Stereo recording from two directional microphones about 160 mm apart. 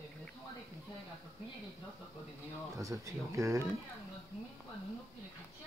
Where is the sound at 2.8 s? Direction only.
20° right (ahead or behind).